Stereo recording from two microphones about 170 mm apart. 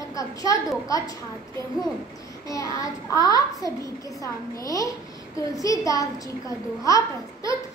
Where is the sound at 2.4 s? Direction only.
20° left (ahead or behind).